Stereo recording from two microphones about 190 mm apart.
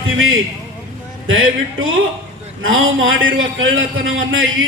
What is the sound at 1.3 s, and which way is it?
Speech, 90° right.